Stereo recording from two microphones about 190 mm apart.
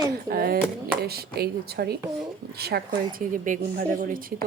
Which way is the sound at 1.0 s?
55° right (ahead or behind).